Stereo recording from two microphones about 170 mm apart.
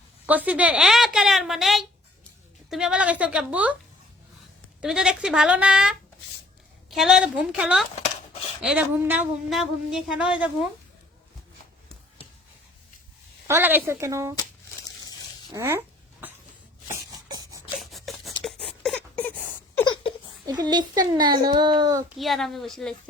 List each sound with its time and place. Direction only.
0.3 s a woman's voice: 10° right (ahead or behind)
4.8 s a woman's voice: centre (ahead or behind)
7.9 s dishes: 40° left (ahead or behind)
8.6 s a woman's voice: 10° right (ahead or behind)
13.5 s a woman's voice: 10° right (ahead or behind)
15.5 s a woman's voice: 15° right (ahead or behind)
16.9 s a sound: 20° right (ahead or behind)
17.7 s a sound: centre (ahead or behind)
19.8 s a sound: 25° left (ahead or behind)
20.5 s a child's voice: 25° right (ahead or behind)
22.2 s a woman's voice: centre (ahead or behind)